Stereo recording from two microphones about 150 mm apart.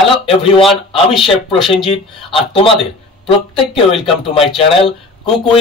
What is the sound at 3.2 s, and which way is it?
Speech, 35° left (ahead or behind).